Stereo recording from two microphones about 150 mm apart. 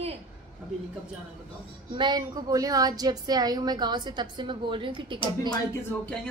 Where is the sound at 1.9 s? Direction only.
30° right (ahead or behind).